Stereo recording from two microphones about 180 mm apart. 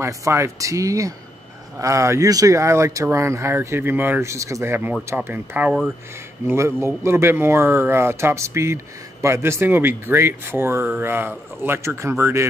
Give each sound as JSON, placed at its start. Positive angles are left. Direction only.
{"t": 0.0, "sound": "speech", "side_deg": -15}